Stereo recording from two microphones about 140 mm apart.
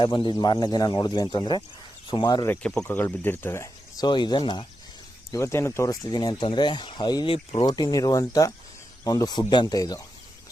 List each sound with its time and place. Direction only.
0.0 s speech: 35° left (ahead or behind)
2.5 s speech: 10° left (ahead or behind); by 4.6 s 30° left (ahead or behind)
5.3 s speech: 20° left (ahead or behind)
7.3 s speech: 45° left (ahead or behind)
7.7 s speech: 30° left (ahead or behind)